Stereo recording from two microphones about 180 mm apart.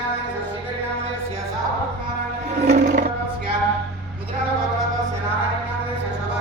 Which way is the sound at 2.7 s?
40° right (ahead or behind).